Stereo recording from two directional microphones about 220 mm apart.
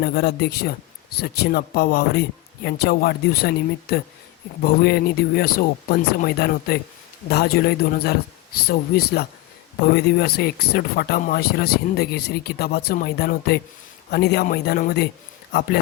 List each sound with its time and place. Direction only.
0.0 s speech: 45° left (ahead or behind)